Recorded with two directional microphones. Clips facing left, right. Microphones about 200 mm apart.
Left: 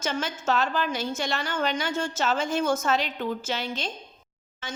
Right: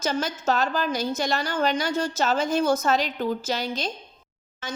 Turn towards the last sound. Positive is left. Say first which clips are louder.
# right 3 dB
turn(degrees=-40)  # may be behind; listen again after turning